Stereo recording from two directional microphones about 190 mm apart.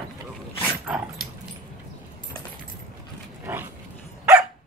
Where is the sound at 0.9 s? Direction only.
5° right (ahead or behind).